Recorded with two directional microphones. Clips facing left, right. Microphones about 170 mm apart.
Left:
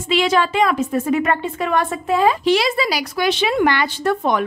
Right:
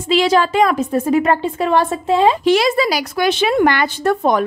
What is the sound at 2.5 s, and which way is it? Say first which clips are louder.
A woman's voice: right 3 dB; 45° right (ahead or behind).